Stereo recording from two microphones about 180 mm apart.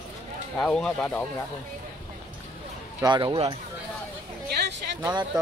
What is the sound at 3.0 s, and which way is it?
Speech, 25° right (ahead or behind).